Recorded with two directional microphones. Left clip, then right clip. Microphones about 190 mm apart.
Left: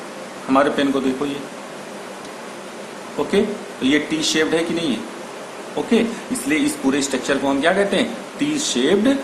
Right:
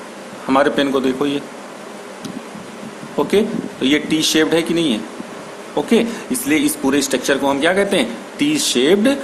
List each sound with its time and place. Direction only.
0.4 s a man's voice: 50° right (ahead or behind)
3.2 s a man's voice: 50° right (ahead or behind)